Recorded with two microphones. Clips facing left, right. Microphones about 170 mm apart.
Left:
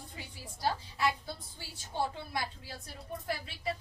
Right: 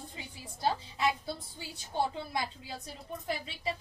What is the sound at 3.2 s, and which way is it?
Speech, 20° right (ahead or behind).